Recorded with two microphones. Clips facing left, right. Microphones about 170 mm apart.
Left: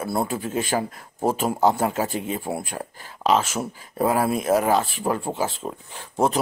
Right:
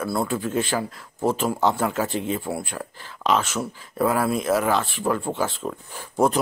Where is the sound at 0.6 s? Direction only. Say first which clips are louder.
Left 1 dB; 45° left (ahead or behind).